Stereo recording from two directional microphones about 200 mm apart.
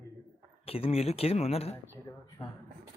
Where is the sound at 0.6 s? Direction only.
30° left (ahead or behind).